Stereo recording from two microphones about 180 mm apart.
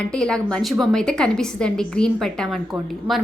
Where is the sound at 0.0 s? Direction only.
5° left (ahead or behind).